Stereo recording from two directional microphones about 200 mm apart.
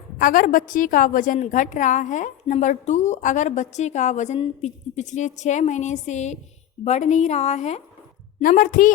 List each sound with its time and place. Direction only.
0.2 s a woman's voice: 45° left (ahead or behind)